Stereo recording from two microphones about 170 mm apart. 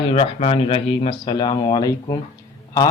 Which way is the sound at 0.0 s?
35° left (ahead or behind).